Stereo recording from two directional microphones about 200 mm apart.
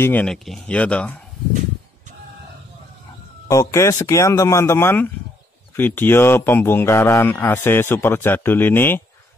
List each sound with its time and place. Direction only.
0.0 s speech: 5° left (ahead or behind)
3.4 s speech: 15° left (ahead or behind)